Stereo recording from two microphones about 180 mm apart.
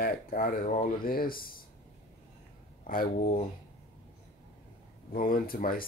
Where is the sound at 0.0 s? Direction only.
50° left (ahead or behind).